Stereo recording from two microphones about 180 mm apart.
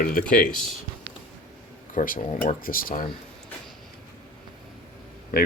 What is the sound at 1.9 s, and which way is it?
Speech, 45° left (ahead or behind).